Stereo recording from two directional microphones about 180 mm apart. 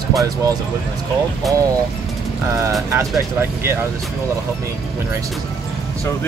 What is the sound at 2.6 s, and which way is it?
Speech, 15° right (ahead or behind).